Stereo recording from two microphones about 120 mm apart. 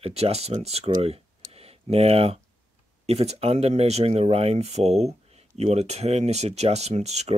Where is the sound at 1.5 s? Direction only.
55° right (ahead or behind).